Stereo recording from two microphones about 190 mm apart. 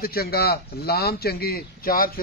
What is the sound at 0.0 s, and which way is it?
Speech, 55° left (ahead or behind).